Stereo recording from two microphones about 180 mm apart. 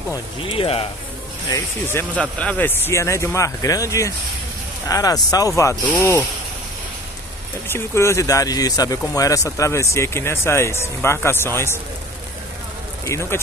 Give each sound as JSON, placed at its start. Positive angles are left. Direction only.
{"t": 0.4, "sound": "speech", "side_deg": 30}
{"t": 1.5, "sound": "speech", "side_deg": 15}
{"t": 7.6, "sound": "speech", "side_deg": 15}
{"t": 13.0, "sound": "speech", "side_deg": 15}